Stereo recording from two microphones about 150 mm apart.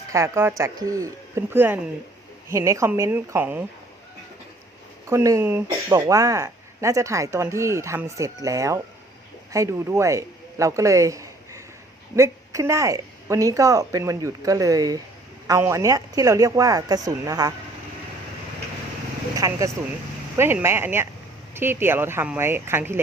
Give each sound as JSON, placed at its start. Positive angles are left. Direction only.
{"t": 0.1, "sound": "speech", "side_deg": -15}
{"t": 5.0, "sound": "speech", "side_deg": -20}
{"t": 19.4, "sound": "speech", "side_deg": -20}